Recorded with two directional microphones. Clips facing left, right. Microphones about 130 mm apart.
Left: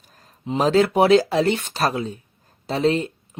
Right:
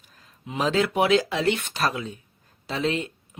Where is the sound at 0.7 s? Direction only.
40° left (ahead or behind).